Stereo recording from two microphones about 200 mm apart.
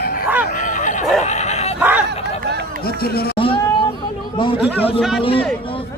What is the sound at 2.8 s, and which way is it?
Speech, 50° left (ahead or behind).